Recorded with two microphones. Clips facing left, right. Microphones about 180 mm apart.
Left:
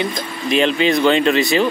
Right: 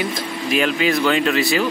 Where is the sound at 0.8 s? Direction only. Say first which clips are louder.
Left 2 dB; 5° right (ahead or behind).